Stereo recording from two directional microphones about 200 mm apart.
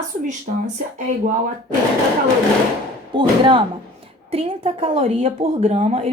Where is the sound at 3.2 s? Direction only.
25° right (ahead or behind).